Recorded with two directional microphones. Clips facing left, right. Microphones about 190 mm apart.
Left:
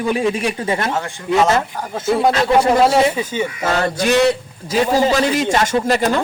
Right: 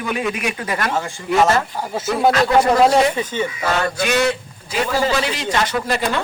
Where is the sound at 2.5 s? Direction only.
5° left (ahead or behind).